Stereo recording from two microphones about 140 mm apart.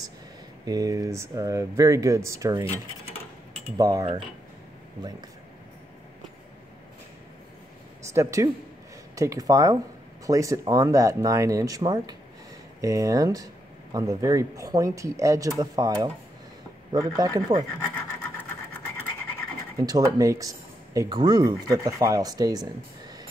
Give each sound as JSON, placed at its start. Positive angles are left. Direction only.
{"t": 0.7, "sound": "speech", "side_deg": -25}
{"t": 3.7, "sound": "speech", "side_deg": -25}
{"t": 8.1, "sound": "speech", "side_deg": -20}
{"t": 17.2, "sound": "speech", "side_deg": -30}
{"t": 17.7, "sound": "scratch", "side_deg": 15}
{"t": 19.8, "sound": "speech", "side_deg": -25}